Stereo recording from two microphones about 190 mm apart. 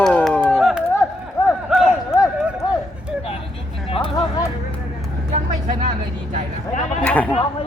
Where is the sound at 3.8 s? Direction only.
30° left (ahead or behind).